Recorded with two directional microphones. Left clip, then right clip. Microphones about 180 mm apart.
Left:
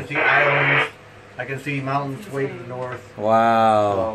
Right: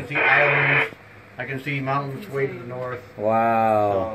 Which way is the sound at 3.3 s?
10° left (ahead or behind).